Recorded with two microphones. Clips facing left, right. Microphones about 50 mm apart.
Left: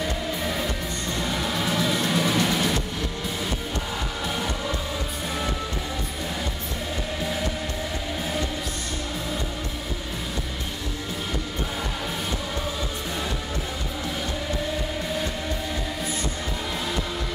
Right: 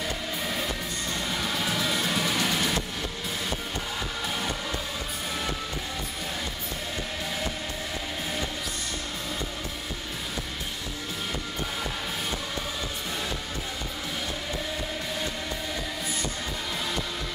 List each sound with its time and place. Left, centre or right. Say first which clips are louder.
0.0 s music: left 4 dB; centre